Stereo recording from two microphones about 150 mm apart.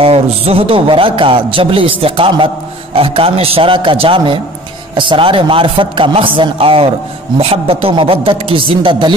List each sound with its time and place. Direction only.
0.0 s a man's voice: 40° right (ahead or behind)